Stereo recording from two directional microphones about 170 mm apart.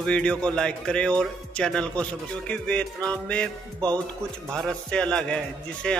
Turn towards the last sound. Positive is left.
turn(degrees=5)  # may be behind; listen again after turning